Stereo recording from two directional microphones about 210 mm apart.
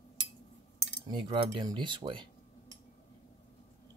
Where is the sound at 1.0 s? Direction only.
25° right (ahead or behind).